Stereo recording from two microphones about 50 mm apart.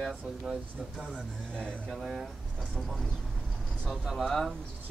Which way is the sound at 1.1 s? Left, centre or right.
Centre.